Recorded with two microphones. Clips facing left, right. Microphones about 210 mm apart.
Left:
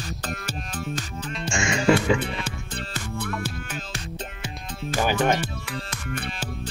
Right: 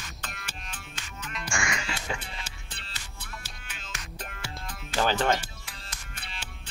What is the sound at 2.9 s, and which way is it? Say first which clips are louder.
Music: left 17 dB; 55° left (ahead or behind).